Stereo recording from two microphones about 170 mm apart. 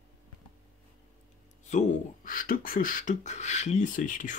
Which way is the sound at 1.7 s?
45° left (ahead or behind).